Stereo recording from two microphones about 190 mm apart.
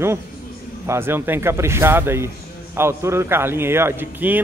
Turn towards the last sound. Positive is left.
turn(degrees=-10)  # may be behind; listen again after turning